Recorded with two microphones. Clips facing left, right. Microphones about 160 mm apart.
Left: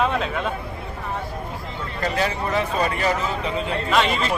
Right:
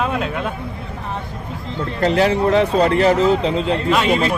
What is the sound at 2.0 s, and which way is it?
Speech, 75° right (ahead or behind).